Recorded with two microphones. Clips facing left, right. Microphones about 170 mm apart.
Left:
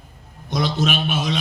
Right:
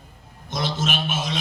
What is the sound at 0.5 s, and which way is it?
Speech, 55° left (ahead or behind).